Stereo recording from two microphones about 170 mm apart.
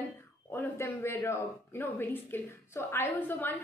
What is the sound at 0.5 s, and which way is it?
Speech, 10° left (ahead or behind).